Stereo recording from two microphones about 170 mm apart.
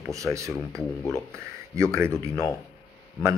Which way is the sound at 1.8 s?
15° right (ahead or behind).